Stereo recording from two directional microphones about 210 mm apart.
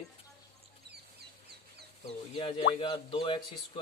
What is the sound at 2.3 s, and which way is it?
Speech, 25° left (ahead or behind).